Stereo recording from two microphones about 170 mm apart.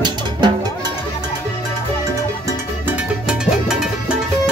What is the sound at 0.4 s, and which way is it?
Music, 25° right (ahead or behind).